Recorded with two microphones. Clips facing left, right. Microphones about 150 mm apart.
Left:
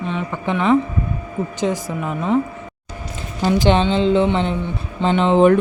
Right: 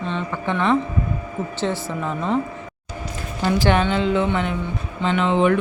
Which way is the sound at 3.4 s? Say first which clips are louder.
Left 3 dB; 20° left (ahead or behind).